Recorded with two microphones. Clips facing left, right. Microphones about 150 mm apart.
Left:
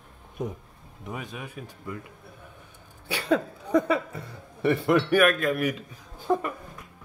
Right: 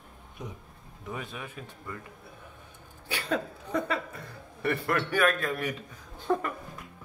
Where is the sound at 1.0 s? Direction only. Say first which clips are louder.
Left 2 dB; 15° left (ahead or behind).